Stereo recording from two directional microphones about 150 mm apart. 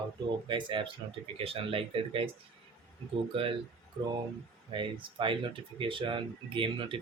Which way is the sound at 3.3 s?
35° right (ahead or behind).